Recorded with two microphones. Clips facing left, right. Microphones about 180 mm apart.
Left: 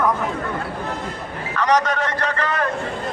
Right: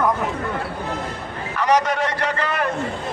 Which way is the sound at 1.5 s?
10° right (ahead or behind).